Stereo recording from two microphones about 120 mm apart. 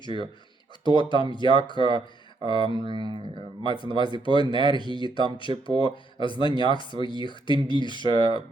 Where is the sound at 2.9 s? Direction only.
40° right (ahead or behind).